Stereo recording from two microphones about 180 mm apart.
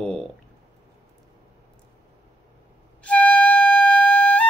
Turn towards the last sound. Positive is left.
turn(degrees=5)  # may be behind; listen again after turning